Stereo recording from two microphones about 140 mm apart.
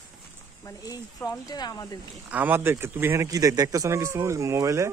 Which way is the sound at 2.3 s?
15° right (ahead or behind).